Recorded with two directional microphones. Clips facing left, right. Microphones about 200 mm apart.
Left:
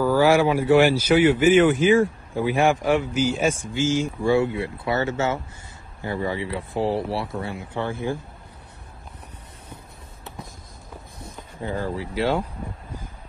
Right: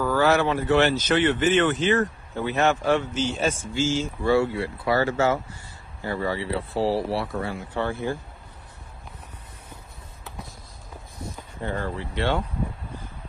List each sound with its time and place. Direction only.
0.0 s speech: 10° left (ahead or behind)
11.6 s speech: 15° left (ahead or behind)